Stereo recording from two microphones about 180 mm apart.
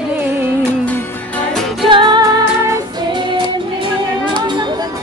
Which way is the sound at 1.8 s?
25° right (ahead or behind).